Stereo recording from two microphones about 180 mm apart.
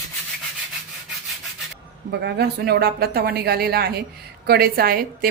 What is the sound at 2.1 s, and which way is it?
A woman's voice, 65° right (ahead or behind).